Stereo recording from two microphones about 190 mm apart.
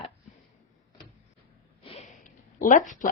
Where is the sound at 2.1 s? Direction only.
45° left (ahead or behind).